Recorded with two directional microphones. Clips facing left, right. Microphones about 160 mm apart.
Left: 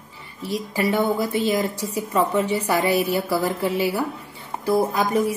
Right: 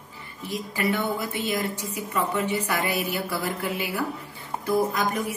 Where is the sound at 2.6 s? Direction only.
35° left (ahead or behind).